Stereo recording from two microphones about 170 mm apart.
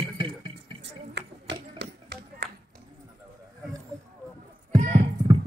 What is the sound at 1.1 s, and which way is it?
Music, 85° right.